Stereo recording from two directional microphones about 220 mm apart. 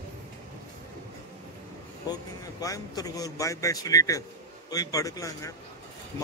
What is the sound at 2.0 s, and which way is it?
A man's voice, 15° left (ahead or behind).